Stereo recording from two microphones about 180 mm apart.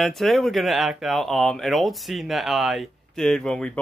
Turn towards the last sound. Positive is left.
turn(degrees=5)  # may be behind; listen again after turning